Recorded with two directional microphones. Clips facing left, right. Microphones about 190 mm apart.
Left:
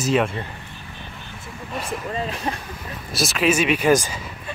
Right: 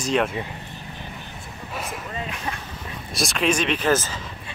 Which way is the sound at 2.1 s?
35° left (ahead or behind).